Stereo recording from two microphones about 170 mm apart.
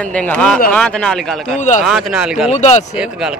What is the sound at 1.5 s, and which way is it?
Speech, 45° left (ahead or behind).